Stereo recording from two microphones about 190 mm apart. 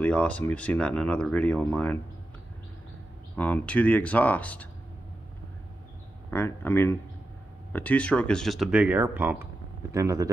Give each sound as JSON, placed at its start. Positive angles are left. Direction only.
{"t": 0.0, "sound": "speech", "side_deg": 5}
{"t": 3.3, "sound": "speech", "side_deg": 10}
{"t": 6.3, "sound": "speech", "side_deg": 10}